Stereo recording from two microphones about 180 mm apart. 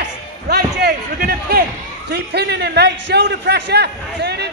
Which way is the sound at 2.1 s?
70° right (ahead or behind).